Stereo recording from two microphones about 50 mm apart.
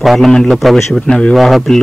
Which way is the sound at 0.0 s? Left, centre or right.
Centre.